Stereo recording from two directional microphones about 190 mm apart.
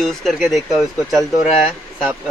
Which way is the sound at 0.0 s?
Centre (ahead or behind).